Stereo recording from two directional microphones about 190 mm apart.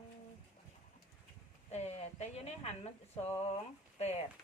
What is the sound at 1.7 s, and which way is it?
A woman's voice, 35° left (ahead or behind).